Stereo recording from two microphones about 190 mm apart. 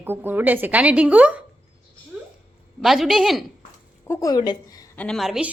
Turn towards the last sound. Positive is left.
turn(degrees=-5)  # may be behind; listen again after turning